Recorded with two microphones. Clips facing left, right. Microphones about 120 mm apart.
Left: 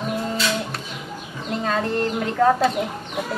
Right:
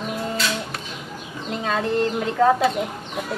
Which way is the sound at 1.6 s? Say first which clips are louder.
Right 1 dB; centre (ahead or behind).